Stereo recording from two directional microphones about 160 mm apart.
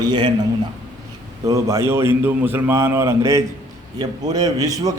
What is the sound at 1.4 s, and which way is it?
A man's voice, 20° right (ahead or behind).